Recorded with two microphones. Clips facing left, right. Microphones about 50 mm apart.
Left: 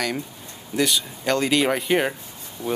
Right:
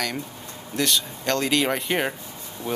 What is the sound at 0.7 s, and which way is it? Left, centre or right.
Speech, centre.